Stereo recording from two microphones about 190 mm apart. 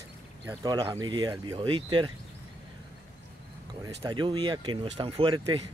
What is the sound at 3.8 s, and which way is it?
Speech, 20° right (ahead or behind).